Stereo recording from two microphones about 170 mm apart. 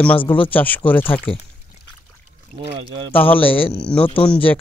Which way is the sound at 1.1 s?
30° left (ahead or behind).